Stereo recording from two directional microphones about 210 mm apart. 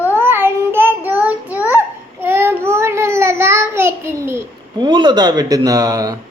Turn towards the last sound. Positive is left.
turn(degrees=-15)  # may be behind; listen again after turning